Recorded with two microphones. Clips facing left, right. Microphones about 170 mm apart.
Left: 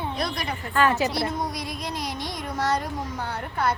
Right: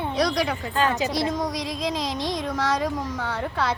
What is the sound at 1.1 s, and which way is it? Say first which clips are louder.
Speech: right 2 dB; 90° right.